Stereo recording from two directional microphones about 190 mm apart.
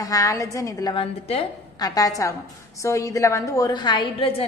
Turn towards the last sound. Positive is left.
turn(degrees=25)  # may be behind; listen again after turning